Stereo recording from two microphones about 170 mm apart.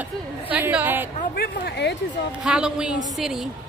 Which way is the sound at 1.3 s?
80° left.